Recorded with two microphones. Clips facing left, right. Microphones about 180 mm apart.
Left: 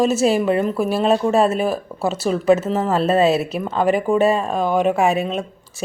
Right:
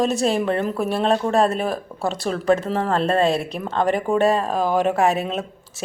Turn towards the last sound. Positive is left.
turn(degrees=0)  # may be behind; listen again after turning